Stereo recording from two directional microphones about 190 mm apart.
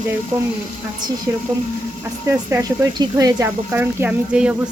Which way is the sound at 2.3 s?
15° right (ahead or behind).